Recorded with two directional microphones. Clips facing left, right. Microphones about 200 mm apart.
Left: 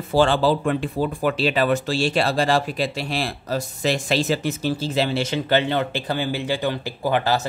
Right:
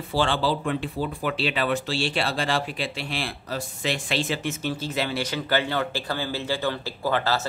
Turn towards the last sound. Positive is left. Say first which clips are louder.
# left 4 dB
turn(degrees=15)  # may be behind; listen again after turning